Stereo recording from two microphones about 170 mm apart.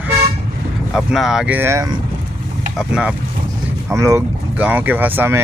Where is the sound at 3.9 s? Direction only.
15° right (ahead or behind).